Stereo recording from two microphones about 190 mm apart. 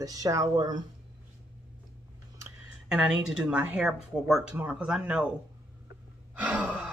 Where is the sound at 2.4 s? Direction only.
5° right (ahead or behind).